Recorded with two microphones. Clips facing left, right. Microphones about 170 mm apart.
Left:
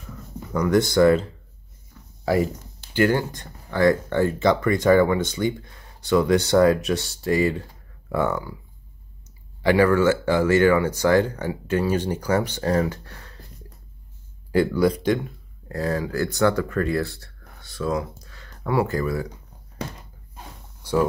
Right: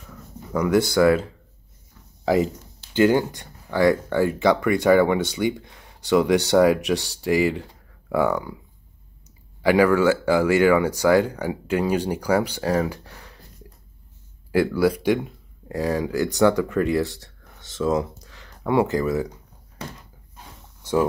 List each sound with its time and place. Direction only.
0.5 s speech: 10° right (ahead or behind)
2.2 s speech: 20° right (ahead or behind)
9.6 s speech: 10° right (ahead or behind)
14.5 s speech: 5° right (ahead or behind)